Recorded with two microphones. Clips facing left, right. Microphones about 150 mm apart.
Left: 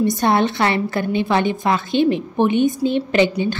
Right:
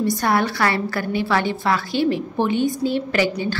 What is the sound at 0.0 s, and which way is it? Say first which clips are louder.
A woman's voice: left 3 dB; 20° left (ahead or behind).